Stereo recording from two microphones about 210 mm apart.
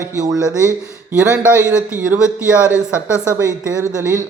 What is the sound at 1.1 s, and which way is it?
A man's voice, 10° right (ahead or behind).